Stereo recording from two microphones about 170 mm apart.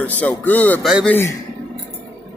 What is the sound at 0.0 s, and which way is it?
Speech, 10° left (ahead or behind).